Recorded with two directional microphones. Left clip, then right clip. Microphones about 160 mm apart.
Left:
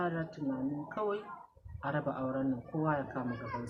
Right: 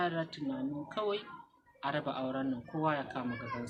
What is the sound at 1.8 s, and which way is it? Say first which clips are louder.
A man's voice: even; 5° right (ahead or behind).